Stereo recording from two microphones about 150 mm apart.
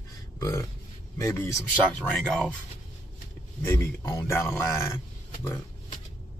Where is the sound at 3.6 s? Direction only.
15° left (ahead or behind).